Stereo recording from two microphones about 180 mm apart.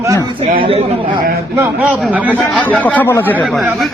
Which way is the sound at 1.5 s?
10° right (ahead or behind).